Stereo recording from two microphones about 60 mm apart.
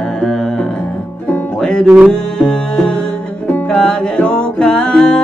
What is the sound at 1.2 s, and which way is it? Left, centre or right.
Music, centre.